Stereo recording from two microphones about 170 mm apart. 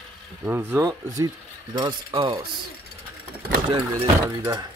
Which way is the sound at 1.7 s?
25° right (ahead or behind).